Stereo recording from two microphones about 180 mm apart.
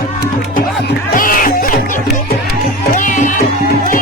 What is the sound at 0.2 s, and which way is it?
Music, 60° left (ahead or behind).